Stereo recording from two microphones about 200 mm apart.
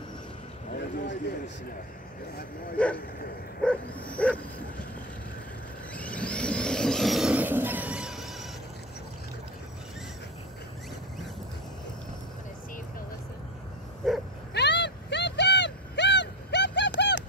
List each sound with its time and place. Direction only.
2.8 s speech: 5° left (ahead or behind)
3.6 s dog: 5° left (ahead or behind)
5.9 s a sound: 5° left (ahead or behind)
14.0 s dog: centre (ahead or behind)
14.5 s vehicle: 60° left (ahead or behind)